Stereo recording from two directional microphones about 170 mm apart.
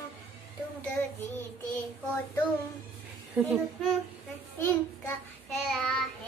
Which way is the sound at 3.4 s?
5° right (ahead or behind).